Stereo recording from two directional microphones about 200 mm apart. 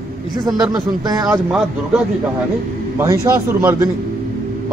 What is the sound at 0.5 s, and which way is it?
Speech, centre (ahead or behind).